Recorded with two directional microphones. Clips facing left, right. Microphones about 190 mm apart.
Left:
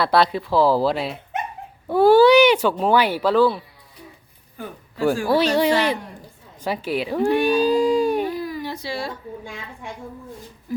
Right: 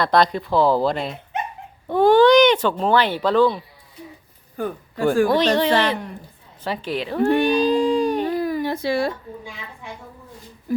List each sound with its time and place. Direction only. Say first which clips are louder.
0.0 s speech: even; 5° left (ahead or behind)
4.5 s speech: right 7 dB; 50° right (ahead or behind)
5.3 s speech: even; 10° left (ahead or behind)
8.4 s a sound: right 6 dB; 50° right (ahead or behind)
10.7 s speech: right 4 dB; 55° right (ahead or behind)